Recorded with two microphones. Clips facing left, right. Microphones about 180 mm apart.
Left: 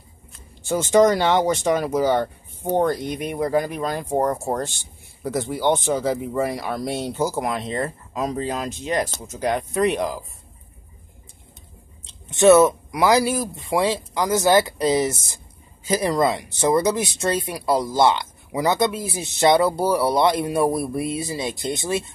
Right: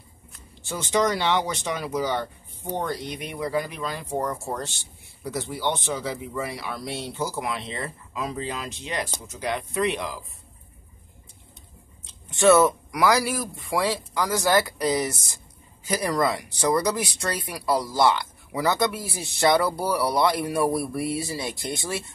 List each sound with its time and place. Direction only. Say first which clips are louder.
0.7 s speech: left 8 dB; 45° left (ahead or behind)
12.1 s speech: left 4 dB; 20° left (ahead or behind)